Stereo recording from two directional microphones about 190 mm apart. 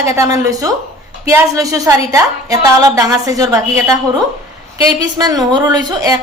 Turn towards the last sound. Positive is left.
turn(degrees=-20)  # may be behind; listen again after turning